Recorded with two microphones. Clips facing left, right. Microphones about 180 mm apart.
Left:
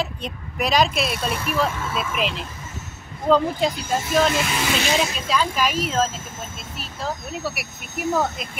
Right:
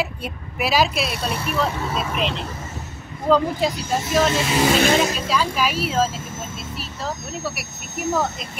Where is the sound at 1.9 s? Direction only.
40° right (ahead or behind).